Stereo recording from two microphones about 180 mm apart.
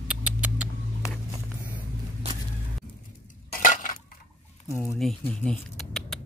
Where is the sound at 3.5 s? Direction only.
50° left (ahead or behind).